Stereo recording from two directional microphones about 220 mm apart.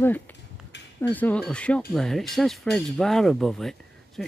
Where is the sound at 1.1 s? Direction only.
5° left (ahead or behind).